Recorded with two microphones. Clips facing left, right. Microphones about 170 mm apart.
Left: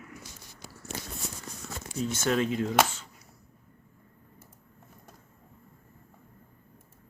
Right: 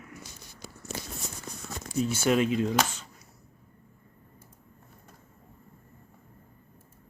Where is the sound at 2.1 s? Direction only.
15° right (ahead or behind).